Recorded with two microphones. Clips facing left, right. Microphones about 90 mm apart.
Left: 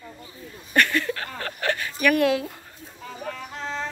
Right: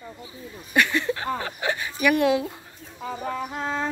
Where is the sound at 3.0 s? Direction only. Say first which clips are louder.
Right 5 dB; 20° right (ahead or behind).